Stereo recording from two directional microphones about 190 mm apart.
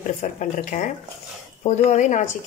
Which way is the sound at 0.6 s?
40° left (ahead or behind).